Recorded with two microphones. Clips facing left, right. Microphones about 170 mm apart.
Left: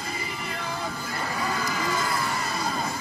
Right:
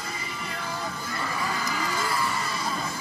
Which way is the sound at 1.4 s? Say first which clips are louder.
Left 2 dB; 45° left (ahead or behind).